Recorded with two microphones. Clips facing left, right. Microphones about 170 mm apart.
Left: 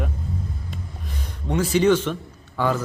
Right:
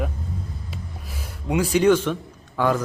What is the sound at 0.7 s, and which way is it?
Music, 5° right (ahead or behind).